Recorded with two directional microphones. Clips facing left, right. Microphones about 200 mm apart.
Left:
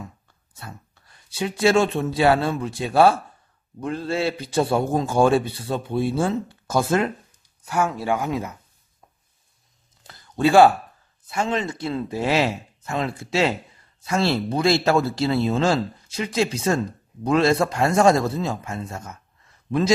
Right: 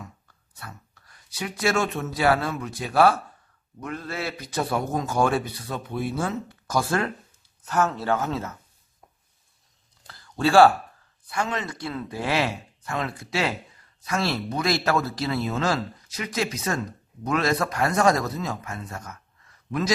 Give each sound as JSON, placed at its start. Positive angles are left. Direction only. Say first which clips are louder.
{"t": 0.6, "sound": "a man's voice", "louder": "left 3 dB", "side_deg": 25}
{"t": 7.6, "sound": "speech", "louder": "left 1 dB", "side_deg": 10}
{"t": 10.0, "sound": "a sound", "louder": "left 4 dB", "side_deg": 20}
{"t": 11.2, "sound": "a man's voice", "louder": "left 4 dB", "side_deg": 25}